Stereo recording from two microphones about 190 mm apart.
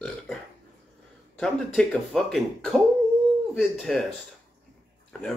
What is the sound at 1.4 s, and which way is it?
A man's voice, 5° left (ahead or behind).